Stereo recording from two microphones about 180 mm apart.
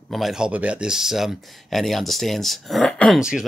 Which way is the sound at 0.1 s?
Centre (ahead or behind).